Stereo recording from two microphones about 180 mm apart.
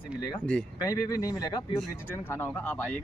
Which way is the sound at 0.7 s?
20° left (ahead or behind).